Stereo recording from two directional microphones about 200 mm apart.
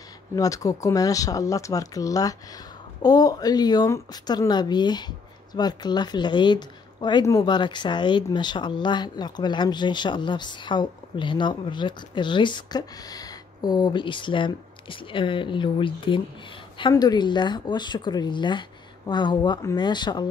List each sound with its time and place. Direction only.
0.4 s speech: 15° left (ahead or behind)